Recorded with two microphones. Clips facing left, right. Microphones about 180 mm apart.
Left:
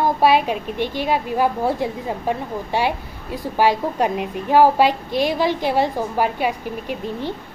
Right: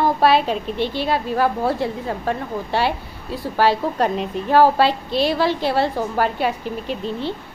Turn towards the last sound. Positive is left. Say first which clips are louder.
# right 1 dB
turn(degrees=15)  # may be behind; listen again after turning